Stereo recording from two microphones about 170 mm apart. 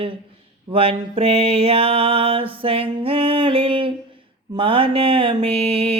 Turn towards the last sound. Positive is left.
turn(degrees=-35)  # may be behind; listen again after turning